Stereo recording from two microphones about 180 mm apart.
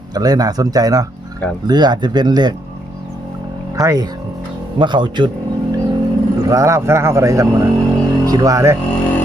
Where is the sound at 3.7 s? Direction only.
20° right (ahead or behind).